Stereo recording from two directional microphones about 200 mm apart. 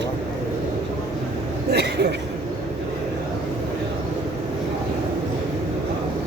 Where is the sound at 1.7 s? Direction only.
55° right (ahead or behind).